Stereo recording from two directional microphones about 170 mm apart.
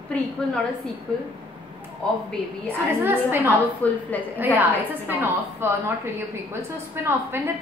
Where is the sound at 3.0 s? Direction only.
10° right (ahead or behind).